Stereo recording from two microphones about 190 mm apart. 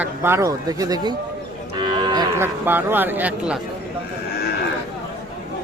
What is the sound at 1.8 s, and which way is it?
Cattle, 25° right (ahead or behind).